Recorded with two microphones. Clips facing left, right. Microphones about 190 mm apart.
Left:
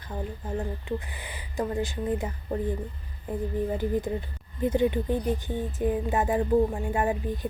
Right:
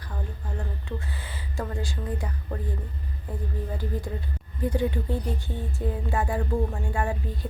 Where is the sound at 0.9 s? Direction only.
15° left (ahead or behind).